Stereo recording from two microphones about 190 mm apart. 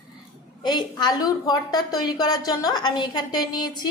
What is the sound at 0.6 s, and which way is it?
A woman's voice, 25° left (ahead or behind).